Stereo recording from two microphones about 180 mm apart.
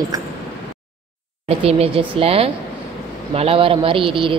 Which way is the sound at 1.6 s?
35° right (ahead or behind).